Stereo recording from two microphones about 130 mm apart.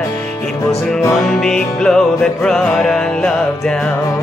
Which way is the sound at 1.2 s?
5° left (ahead or behind).